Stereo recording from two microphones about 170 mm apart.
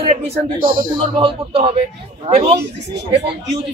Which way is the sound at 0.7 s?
30° right (ahead or behind).